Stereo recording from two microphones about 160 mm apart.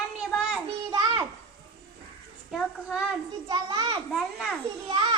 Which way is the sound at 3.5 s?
30° right (ahead or behind).